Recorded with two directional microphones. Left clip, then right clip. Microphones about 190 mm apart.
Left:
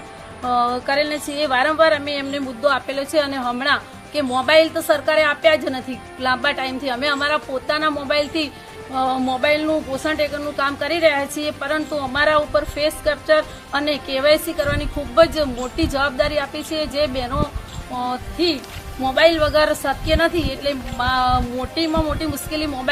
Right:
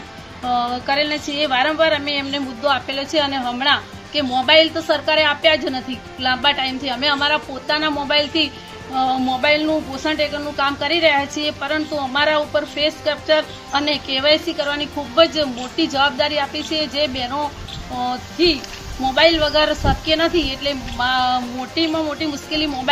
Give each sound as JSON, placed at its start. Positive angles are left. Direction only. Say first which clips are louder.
{"t": 0.4, "sound": "a woman's voice", "louder": "left 1 dB", "side_deg": 15}